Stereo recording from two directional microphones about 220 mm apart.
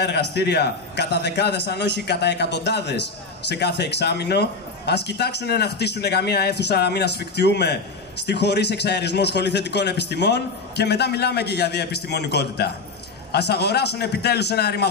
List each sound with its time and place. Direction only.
0.0 s a man's voice: 50° left (ahead or behind)